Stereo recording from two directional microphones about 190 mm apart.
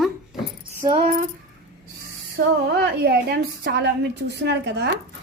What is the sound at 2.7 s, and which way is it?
A woman's voice, 60° right (ahead or behind).